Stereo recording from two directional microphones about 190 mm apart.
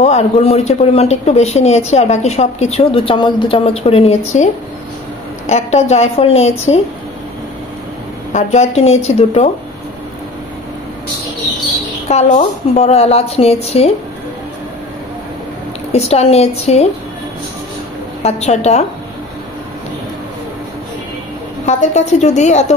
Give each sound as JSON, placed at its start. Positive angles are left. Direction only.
{"t": 0.0, "sound": "a woman's voice", "side_deg": 35}
{"t": 5.5, "sound": "a woman's voice", "side_deg": 35}
{"t": 8.3, "sound": "a woman's voice", "side_deg": 40}
{"t": 12.1, "sound": "a woman's voice", "side_deg": 35}
{"t": 15.9, "sound": "a woman's voice", "side_deg": 35}
{"t": 18.2, "sound": "a woman's voice", "side_deg": 35}
{"t": 21.6, "sound": "a woman's voice", "side_deg": 35}